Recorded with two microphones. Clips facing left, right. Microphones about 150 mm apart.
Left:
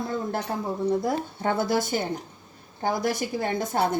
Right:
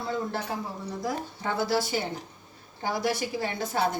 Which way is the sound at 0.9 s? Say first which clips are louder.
Left 7 dB; 55° left (ahead or behind).